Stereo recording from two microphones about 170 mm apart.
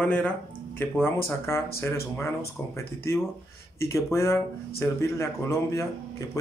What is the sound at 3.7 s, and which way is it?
Speech, 15° left (ahead or behind).